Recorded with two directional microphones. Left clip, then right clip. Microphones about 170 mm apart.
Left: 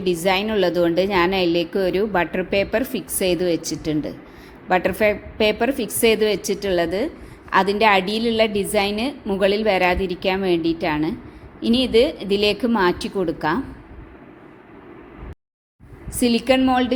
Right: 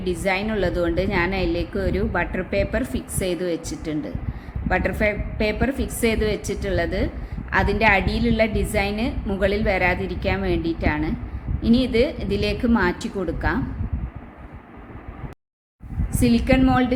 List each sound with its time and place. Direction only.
0.0 s a woman's voice: 15° left (ahead or behind)
16.2 s a woman's voice: 15° left (ahead or behind)